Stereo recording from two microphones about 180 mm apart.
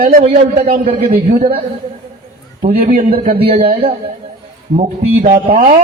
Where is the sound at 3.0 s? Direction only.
40° right (ahead or behind).